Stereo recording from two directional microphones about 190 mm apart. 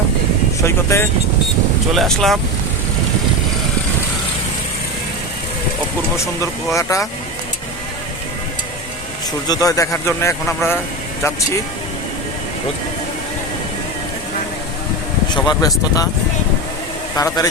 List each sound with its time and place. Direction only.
0.6 s speech: 15° left (ahead or behind)
2.0 s speech: centre (ahead or behind)
6.7 s speech: 15° left (ahead or behind)
9.5 s speech: 15° left (ahead or behind)
15.4 s speech: 20° left (ahead or behind)
17.2 s speech: 20° left (ahead or behind)